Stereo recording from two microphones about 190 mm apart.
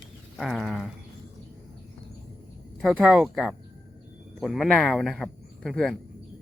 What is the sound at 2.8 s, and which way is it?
Speech, centre (ahead or behind).